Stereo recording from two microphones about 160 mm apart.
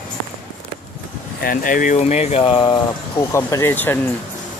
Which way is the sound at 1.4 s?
60° left (ahead or behind).